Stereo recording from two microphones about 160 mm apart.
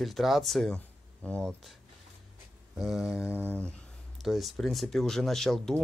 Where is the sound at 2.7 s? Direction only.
Centre (ahead or behind).